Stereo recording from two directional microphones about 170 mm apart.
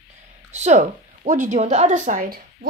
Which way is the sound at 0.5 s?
40° right (ahead or behind).